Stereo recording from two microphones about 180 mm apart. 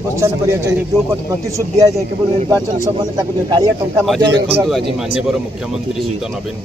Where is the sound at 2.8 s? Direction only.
20° right (ahead or behind).